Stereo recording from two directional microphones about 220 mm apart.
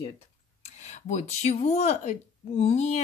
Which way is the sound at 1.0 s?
35° left (ahead or behind).